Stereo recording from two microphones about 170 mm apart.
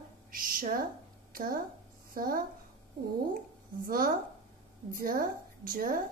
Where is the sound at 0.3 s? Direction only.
55° right (ahead or behind).